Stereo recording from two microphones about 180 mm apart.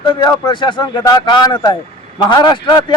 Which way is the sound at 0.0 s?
25° left (ahead or behind).